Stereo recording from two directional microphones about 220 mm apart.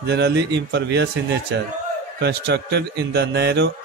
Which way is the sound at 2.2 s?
50° right (ahead or behind).